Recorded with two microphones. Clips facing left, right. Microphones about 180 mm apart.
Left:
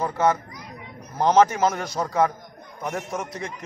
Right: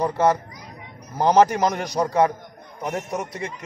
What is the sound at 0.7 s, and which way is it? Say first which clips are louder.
A man's voice: right 1 dB; 10° right (ahead or behind).